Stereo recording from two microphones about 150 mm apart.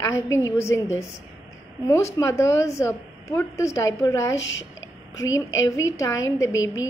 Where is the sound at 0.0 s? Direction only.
20° left (ahead or behind).